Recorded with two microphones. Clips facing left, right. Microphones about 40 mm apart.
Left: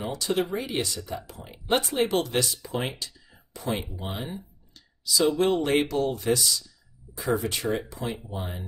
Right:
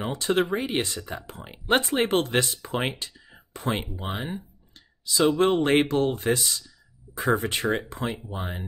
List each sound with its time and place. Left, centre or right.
0.0 s speech: right